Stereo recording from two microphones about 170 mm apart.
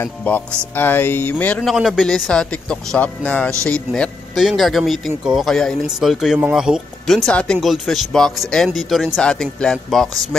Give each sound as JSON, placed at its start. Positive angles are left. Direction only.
{"t": 0.0, "sound": "a man's voice", "side_deg": 10}